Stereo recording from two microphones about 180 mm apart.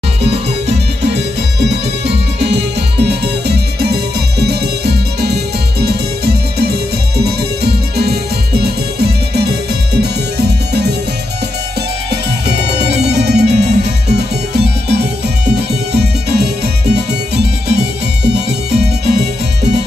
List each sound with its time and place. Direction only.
2.0 s music: 70° right (ahead or behind)
12.8 s music: 65° right (ahead or behind)
18.2 s music: 65° right (ahead or behind)